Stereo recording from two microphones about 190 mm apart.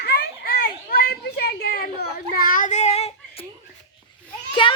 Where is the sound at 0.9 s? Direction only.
55° left (ahead or behind); by 3.4 s 35° left (ahead or behind).